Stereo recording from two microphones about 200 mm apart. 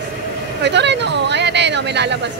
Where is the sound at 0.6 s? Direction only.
60° right (ahead or behind).